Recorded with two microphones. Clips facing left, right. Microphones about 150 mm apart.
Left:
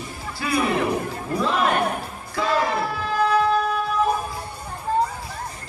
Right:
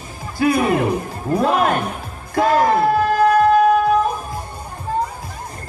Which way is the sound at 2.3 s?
50° right (ahead or behind).